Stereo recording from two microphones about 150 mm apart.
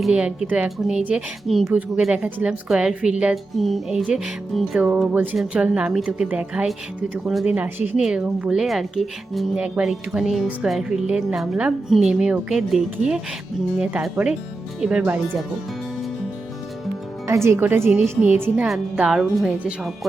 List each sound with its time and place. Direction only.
0.0 s a woman's voice: 5° right (ahead or behind)
17.2 s a woman's voice: 20° right (ahead or behind)